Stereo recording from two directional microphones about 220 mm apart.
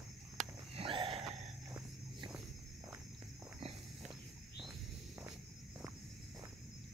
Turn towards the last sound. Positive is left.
turn(degrees=-10)  # may be behind; listen again after turning